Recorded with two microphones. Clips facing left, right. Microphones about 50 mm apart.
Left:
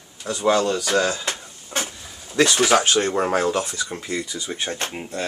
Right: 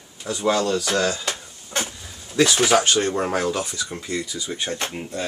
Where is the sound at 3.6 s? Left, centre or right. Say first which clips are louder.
Left 2 dB; left.